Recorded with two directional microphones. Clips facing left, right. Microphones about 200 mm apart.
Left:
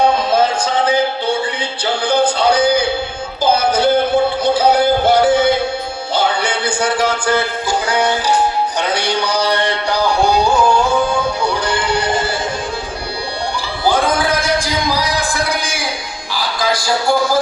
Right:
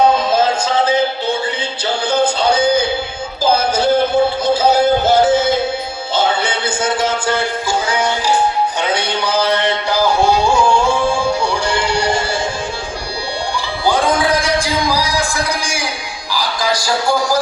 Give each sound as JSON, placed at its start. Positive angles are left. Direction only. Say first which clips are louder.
{"t": 3.5, "sound": "music", "louder": "left 1 dB", "side_deg": -25}
{"t": 9.0, "sound": "music", "louder": "even", "side_deg": -25}
{"t": 11.9, "sound": "music", "louder": "right 1 dB", "side_deg": -25}